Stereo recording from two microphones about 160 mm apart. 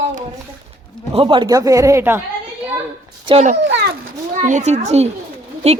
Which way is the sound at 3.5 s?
90° right.